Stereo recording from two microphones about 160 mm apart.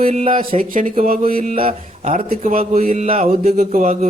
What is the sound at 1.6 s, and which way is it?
Speech, 35° right (ahead or behind).